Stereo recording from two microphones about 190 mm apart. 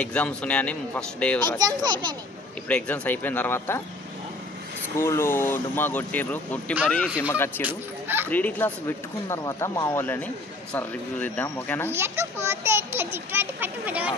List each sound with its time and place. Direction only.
0.0 s speech: 5° left (ahead or behind)
1.6 s a child's voice: 20° right (ahead or behind)
2.7 s speech: 10° left (ahead or behind)
4.9 s speech: 15° left (ahead or behind)
7.1 s speech: 5° right (ahead or behind)
7.3 s speech: 10° left (ahead or behind)
7.6 s a sound: 10° right (ahead or behind)
8.3 s speech: 10° left (ahead or behind)
11.9 s a child's voice: 15° right (ahead or behind)